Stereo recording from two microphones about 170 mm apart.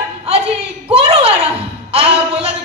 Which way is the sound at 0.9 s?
35° right (ahead or behind).